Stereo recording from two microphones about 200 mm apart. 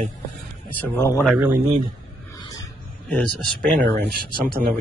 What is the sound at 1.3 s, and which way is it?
Speech, 10° right (ahead or behind).